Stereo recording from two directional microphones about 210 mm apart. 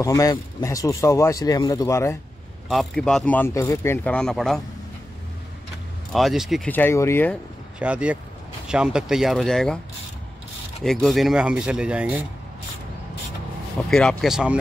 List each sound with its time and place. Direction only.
0.0 s speech: 15° left (ahead or behind)
2.7 s speech: centre (ahead or behind)
6.1 s speech: centre (ahead or behind)
7.8 s speech: 5° right (ahead or behind)
10.8 s speech: centre (ahead or behind)
13.8 s speech: 5° left (ahead or behind)